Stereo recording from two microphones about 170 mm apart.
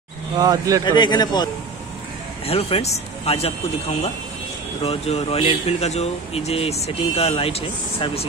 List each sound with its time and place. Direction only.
0.4 s speech: 20° right (ahead or behind)
0.8 s speech: 25° left (ahead or behind)
2.4 s speech: 35° left (ahead or behind)